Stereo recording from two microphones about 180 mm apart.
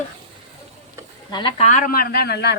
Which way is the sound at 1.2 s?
25° left (ahead or behind).